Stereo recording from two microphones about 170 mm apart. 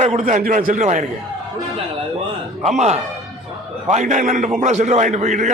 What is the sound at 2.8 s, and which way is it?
A man's voice, 40° right (ahead or behind).